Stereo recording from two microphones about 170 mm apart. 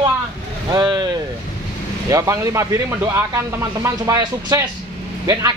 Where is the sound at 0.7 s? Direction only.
25° right (ahead or behind).